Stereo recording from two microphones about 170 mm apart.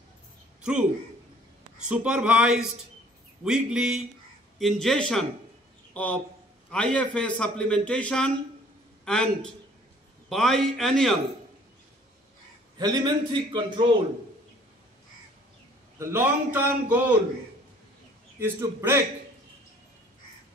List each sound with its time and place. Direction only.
1.8 s a man's voice: 5° right (ahead or behind)
12.7 s a man's voice: 25° right (ahead or behind)
16.0 s a man's voice: 15° right (ahead or behind)
18.4 s a man's voice: 15° right (ahead or behind)